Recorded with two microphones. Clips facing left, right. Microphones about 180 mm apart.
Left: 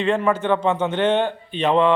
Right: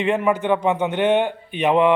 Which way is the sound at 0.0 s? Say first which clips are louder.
Even; 15° right (ahead or behind).